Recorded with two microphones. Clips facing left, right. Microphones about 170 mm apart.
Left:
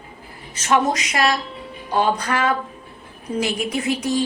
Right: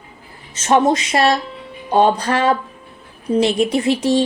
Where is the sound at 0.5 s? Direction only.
25° right (ahead or behind).